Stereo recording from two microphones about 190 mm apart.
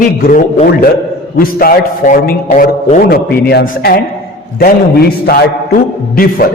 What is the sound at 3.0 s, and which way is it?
Speech, 55° left (ahead or behind).